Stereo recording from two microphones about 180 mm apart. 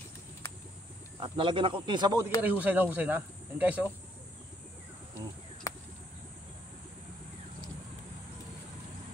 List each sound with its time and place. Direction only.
1.2 s speech: 30° right (ahead or behind)
2.4 s speech: 10° right (ahead or behind)
5.7 s a sound: 20° left (ahead or behind)